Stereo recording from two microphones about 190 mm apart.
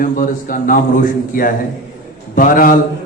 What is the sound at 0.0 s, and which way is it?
Mantra, 45° left (ahead or behind).